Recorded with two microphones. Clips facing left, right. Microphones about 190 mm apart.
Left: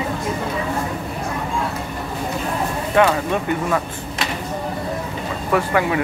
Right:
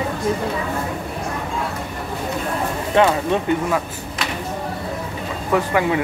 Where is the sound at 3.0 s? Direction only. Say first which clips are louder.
Even; 20° right (ahead or behind).